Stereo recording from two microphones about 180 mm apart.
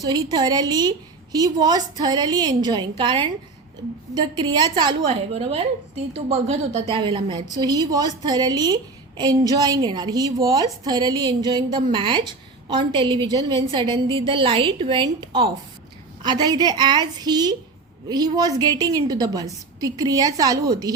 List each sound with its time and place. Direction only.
0.0 s a woman's voice: 25° right (ahead or behind)
5.0 s a woman's voice: 35° right (ahead or behind); by 20.9 s 20° right (ahead or behind)